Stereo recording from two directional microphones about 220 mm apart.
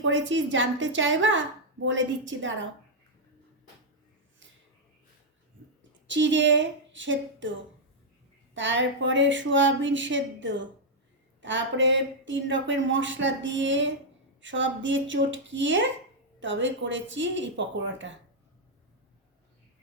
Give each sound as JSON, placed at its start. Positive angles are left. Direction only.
{"t": 0.0, "sound": "a woman's voice", "side_deg": -60}
{"t": 6.1, "sound": "a woman's voice", "side_deg": -55}
{"t": 8.5, "sound": "a woman's voice", "side_deg": -55}